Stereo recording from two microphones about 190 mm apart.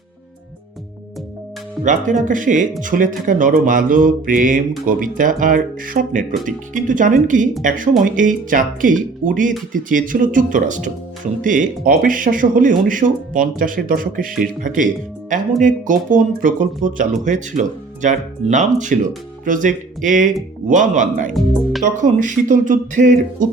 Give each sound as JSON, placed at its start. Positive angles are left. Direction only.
{"t": 1.8, "sound": "speech", "side_deg": -40}